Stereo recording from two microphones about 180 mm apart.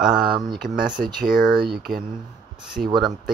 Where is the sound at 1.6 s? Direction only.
60° right (ahead or behind).